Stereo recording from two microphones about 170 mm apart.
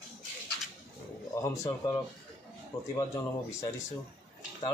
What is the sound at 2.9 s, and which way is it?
Speech, 20° left (ahead or behind).